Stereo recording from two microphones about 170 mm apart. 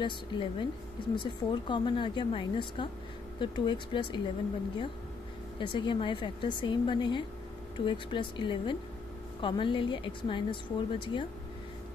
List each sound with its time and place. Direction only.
0.0 s speech: 30° left (ahead or behind)
5.6 s speech: 30° left (ahead or behind)